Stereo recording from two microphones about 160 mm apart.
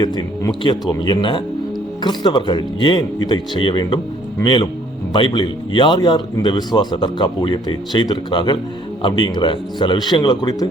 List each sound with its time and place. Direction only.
0.0 s speech: 25° left (ahead or behind)